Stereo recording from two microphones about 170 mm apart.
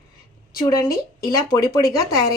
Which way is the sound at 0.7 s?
20° left (ahead or behind).